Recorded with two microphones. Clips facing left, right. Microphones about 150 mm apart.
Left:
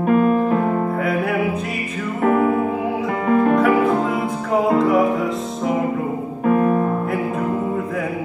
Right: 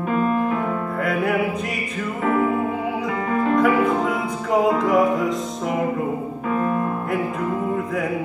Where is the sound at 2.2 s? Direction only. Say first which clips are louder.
Left 4 dB; 50° left (ahead or behind).